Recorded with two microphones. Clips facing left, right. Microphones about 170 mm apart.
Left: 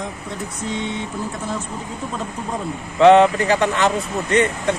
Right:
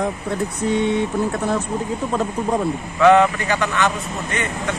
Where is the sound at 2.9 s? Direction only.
30° left (ahead or behind).